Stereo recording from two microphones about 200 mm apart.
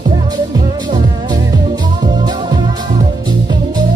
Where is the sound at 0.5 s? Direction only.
20° right (ahead or behind).